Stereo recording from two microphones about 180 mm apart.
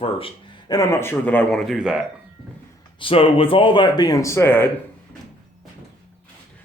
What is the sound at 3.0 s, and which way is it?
Speech, 30° left (ahead or behind).